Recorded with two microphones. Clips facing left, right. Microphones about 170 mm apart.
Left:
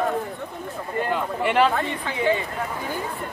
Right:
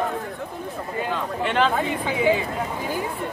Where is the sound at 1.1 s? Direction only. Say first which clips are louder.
Left 2 dB; 10° left (ahead or behind).